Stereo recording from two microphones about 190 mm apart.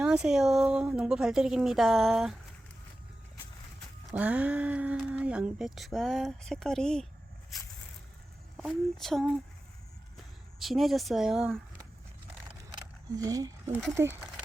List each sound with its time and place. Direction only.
0.0 s speech: 5° right (ahead or behind)
4.1 s speech: 5° right (ahead or behind)
8.5 s speech: centre (ahead or behind)
10.6 s speech: centre (ahead or behind)
12.7 s a sound: 20° right (ahead or behind)
13.9 s speech: 15° right (ahead or behind)